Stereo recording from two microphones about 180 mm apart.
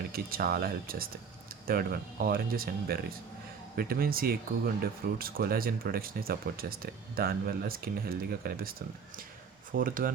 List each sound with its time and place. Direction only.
0.1 s speech: 55° right (ahead or behind)
9.8 s speech: 50° right (ahead or behind)